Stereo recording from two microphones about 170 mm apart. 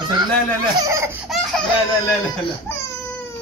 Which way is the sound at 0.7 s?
15° right (ahead or behind).